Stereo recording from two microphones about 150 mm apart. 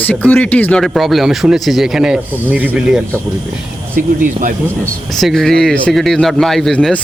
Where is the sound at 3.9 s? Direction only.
65° right (ahead or behind).